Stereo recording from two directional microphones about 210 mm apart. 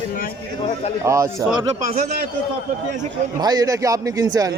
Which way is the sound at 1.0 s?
15° right (ahead or behind).